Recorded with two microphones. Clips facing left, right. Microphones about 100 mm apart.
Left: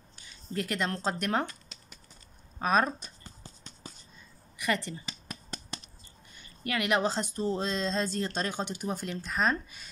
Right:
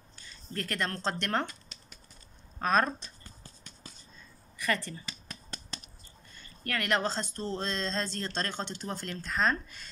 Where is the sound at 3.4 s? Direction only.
25° left (ahead or behind).